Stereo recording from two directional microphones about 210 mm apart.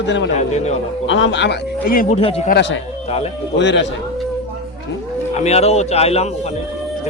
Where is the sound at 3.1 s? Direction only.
30° left (ahead or behind).